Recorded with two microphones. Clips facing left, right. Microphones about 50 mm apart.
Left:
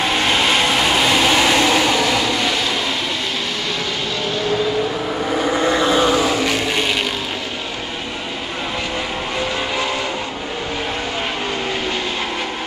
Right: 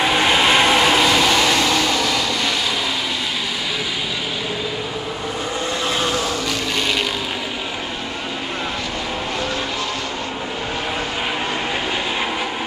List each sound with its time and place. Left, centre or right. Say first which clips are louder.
0.0 s vehicle: right 1 dB; centre
1.0 s vehicle: left 1 dB; centre
5.6 s vehicle: left 6 dB; left